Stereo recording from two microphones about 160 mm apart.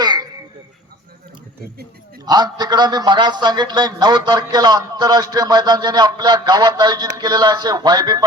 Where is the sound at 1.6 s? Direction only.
75° right (ahead or behind).